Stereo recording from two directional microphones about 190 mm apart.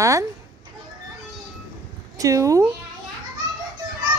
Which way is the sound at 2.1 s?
15° right (ahead or behind).